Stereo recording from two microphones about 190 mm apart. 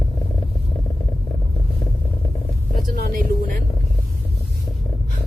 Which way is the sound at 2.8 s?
50° right (ahead or behind).